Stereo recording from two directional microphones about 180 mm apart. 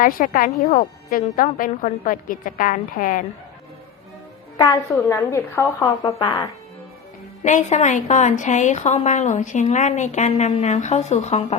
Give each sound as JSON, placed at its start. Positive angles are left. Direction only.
{"t": 0.0, "sound": "a woman's voice", "side_deg": 50}
{"t": 1.2, "sound": "a woman's voice", "side_deg": 45}
{"t": 4.5, "sound": "a woman's voice", "side_deg": 25}
{"t": 6.1, "sound": "speech", "side_deg": 30}
{"t": 7.4, "sound": "a woman's voice", "side_deg": 40}